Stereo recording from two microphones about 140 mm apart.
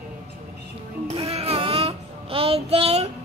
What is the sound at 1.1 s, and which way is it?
Child singing, 45° right (ahead or behind).